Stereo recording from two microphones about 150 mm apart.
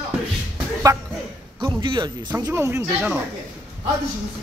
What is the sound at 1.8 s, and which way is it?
Speech, 30° right (ahead or behind).